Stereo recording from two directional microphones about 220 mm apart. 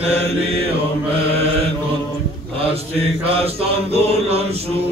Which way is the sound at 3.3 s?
25° right (ahead or behind).